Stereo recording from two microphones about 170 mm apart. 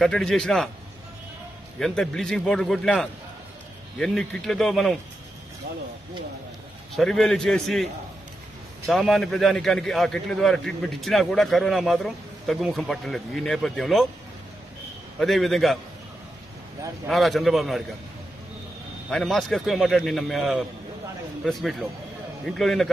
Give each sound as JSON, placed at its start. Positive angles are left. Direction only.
{"t": 0.0, "sound": "a man's voice", "side_deg": 0}
{"t": 1.8, "sound": "a man's voice", "side_deg": 5}
{"t": 6.9, "sound": "a man's voice", "side_deg": 0}
{"t": 15.1, "sound": "a man's voice", "side_deg": 0}
{"t": 17.1, "sound": "a man's voice", "side_deg": 0}
{"t": 19.0, "sound": "a man's voice", "side_deg": 0}